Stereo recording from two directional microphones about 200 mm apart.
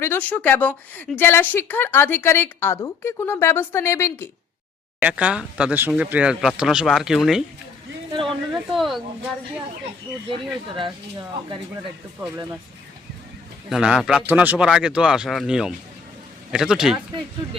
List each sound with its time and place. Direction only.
0.0 s a woman's voice: 10° left (ahead or behind)
4.9 s speech: 5° right (ahead or behind)
10.2 s speech: 25° right (ahead or behind)
13.7 s speech: 5° right (ahead or behind)